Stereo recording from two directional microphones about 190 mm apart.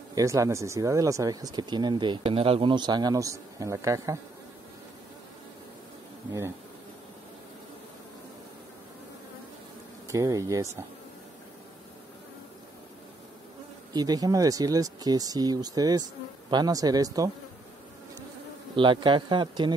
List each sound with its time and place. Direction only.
0.1 s speech: 15° right (ahead or behind)
10.0 s speech: 15° right (ahead or behind)
13.9 s speech: 20° right (ahead or behind)
18.8 s speech: 25° right (ahead or behind)